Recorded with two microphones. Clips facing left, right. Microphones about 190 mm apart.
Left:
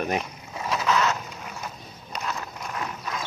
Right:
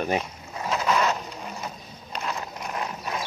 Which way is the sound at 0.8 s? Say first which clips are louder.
Even; 15° right (ahead or behind).